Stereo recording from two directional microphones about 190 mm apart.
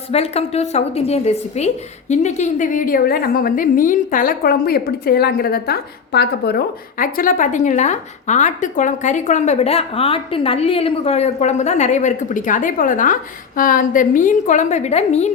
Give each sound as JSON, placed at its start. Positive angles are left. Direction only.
{"t": 0.1, "sound": "a woman's voice", "side_deg": 35}
{"t": 7.0, "sound": "a woman's voice", "side_deg": 45}